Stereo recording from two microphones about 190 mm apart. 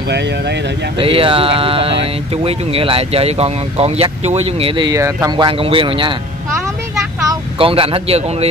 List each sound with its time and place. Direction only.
0.9 s speech: 30° right (ahead or behind)
5.5 s speech: 30° right (ahead or behind)
7.5 s speech: 30° right (ahead or behind)